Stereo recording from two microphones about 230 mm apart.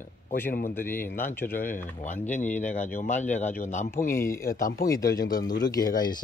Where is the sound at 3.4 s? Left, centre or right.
Centre.